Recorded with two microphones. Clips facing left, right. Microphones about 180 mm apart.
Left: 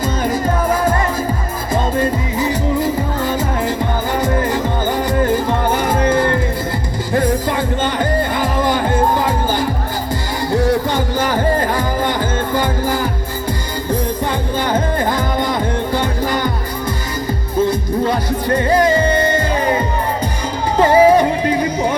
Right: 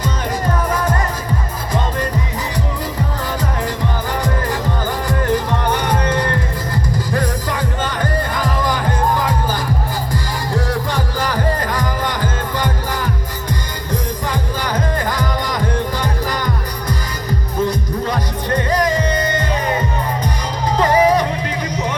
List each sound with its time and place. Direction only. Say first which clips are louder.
1.7 s music: left 4 dB; 25° left (ahead or behind)
5.9 s music: left 4 dB; 25° left (ahead or behind)
8.4 s music: left 3 dB; 25° left (ahead or behind)
16.0 s music: left 3 dB; 25° left (ahead or behind)
17.7 s music: left 4 dB; 30° left (ahead or behind)
20.8 s music: left 4 dB; 30° left (ahead or behind)